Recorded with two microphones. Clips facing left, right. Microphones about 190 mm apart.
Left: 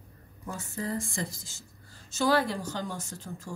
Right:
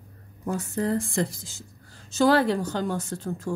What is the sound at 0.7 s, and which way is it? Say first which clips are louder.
Speech: right 7 dB; 65° right (ahead or behind).